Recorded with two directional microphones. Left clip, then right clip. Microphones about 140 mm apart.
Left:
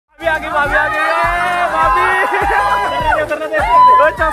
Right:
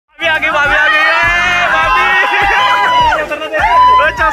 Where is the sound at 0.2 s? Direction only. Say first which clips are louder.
Right 4 dB; 20° left (ahead or behind).